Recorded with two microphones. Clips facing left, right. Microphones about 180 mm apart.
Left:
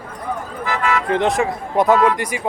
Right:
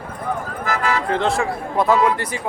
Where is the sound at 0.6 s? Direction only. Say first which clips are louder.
Left 1 dB; 40° right (ahead or behind).